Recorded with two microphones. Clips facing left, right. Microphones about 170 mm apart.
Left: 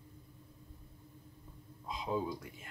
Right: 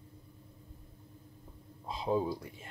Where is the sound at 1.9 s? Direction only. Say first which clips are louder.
Right 5 dB; 30° right (ahead or behind).